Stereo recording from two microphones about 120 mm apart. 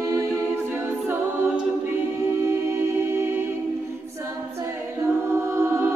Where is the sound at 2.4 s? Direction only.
20° right (ahead or behind).